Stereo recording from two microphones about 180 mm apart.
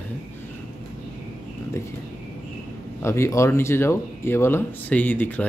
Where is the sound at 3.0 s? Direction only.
15° left (ahead or behind).